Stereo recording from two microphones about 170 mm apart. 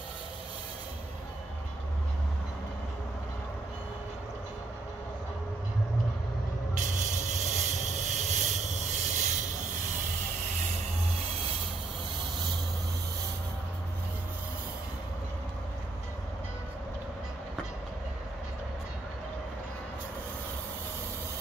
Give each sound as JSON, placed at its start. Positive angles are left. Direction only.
{"t": 6.9, "sound": "vehicle", "side_deg": -45}